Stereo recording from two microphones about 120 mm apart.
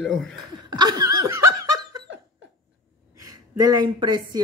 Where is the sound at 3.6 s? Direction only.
35° right (ahead or behind).